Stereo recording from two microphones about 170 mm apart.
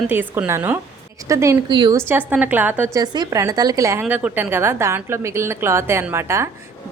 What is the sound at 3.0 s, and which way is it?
A woman's voice, 20° right (ahead or behind).